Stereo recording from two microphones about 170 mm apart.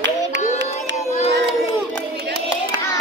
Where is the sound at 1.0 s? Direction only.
40° left (ahead or behind).